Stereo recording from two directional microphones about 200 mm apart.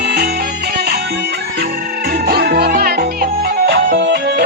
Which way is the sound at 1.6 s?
50° right (ahead or behind).